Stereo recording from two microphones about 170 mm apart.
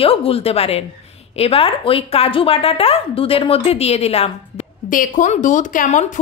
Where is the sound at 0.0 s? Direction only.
35° left (ahead or behind).